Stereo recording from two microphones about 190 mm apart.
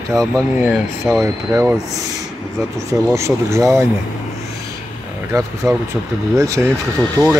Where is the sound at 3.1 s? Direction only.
15° right (ahead or behind).